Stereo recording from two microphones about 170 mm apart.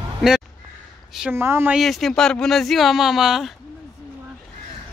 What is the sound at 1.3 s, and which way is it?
Speech, 15° right (ahead or behind).